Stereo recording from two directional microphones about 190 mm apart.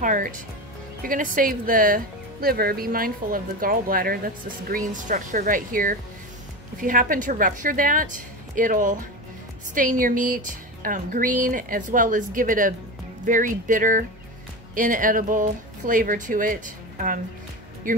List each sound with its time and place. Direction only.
0.0 s speech: 45° right (ahead or behind)